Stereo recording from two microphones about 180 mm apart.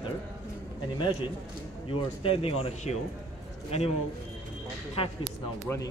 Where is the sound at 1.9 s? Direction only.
30° left (ahead or behind).